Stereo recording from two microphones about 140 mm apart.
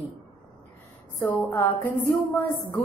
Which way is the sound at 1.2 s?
10° left (ahead or behind).